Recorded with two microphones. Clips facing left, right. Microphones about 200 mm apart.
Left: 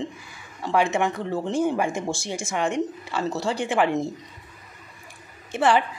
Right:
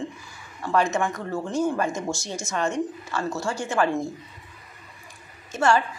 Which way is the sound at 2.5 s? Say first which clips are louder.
Left 1 dB; 15° left (ahead or behind).